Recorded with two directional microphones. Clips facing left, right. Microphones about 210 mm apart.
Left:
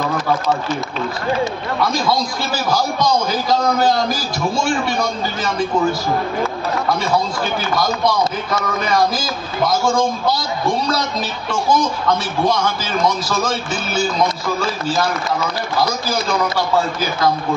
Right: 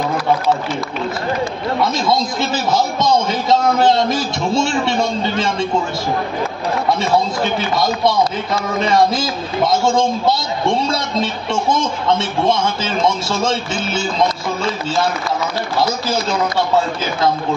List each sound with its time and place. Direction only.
1.8 s a man's voice: 25° right (ahead or behind)
7.5 s a man's voice: 25° right (ahead or behind)